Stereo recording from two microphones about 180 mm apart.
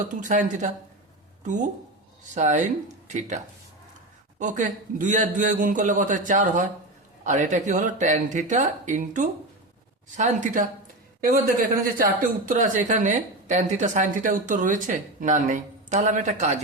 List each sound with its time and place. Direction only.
0.1 s speech: 45° right (ahead or behind)
4.4 s speech: 45° right (ahead or behind)